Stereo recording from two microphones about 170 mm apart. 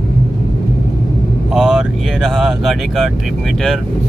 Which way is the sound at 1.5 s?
5° right (ahead or behind).